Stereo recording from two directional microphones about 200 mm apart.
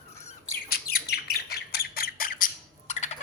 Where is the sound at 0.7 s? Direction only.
50° left (ahead or behind).